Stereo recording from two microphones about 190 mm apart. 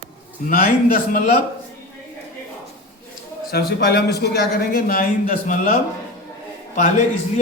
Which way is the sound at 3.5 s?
55° left (ahead or behind).